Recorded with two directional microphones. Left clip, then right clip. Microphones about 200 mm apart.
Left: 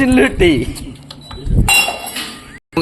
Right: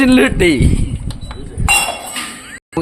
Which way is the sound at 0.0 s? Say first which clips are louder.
Right 1 dB; 30° right (ahead or behind).